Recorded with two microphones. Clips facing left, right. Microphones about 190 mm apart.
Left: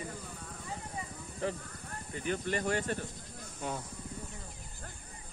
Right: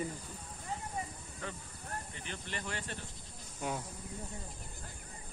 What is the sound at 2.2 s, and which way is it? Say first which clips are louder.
Speech: left 10 dB; 45° left (ahead or behind).